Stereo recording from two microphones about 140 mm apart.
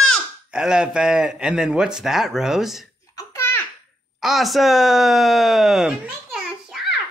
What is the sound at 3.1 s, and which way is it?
Babbling, 20° left (ahead or behind).